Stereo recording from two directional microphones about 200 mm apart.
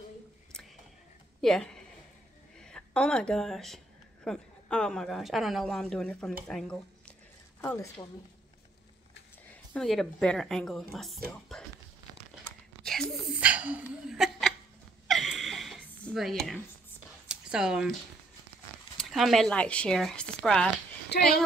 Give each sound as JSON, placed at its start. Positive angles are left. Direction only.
{"t": 1.4, "sound": "a woman's voice", "side_deg": 0}
{"t": 9.8, "sound": "speech", "side_deg": 0}
{"t": 12.8, "sound": "a sound", "side_deg": -5}
{"t": 18.9, "sound": "speech", "side_deg": 0}